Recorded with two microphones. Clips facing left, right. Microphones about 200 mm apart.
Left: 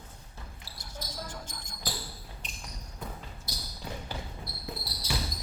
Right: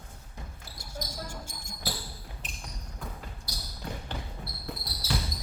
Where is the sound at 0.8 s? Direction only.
10° right (ahead or behind).